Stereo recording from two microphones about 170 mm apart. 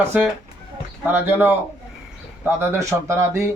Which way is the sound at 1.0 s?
10° right (ahead or behind).